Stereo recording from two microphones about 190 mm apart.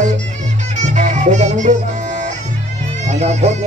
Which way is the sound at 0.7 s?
40° right (ahead or behind).